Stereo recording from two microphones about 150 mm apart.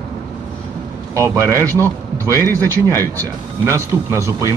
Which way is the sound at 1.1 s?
20° right (ahead or behind).